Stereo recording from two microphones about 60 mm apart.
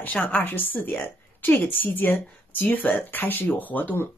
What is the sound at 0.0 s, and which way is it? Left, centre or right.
Speech, left.